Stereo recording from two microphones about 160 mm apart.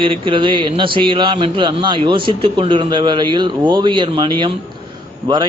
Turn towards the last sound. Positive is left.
turn(degrees=-25)  # may be behind; listen again after turning